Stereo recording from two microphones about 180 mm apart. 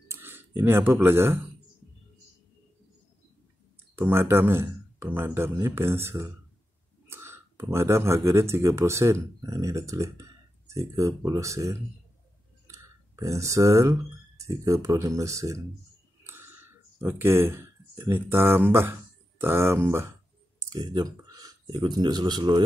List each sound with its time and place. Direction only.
0.1 s speech: 10° right (ahead or behind)
3.9 s speech: 10° right (ahead or behind)
12.6 s clicking: 15° right (ahead or behind)
14.4 s speech: 20° right (ahead or behind)
16.3 s a sound: 15° right (ahead or behind)
19.4 s speech: 15° right (ahead or behind)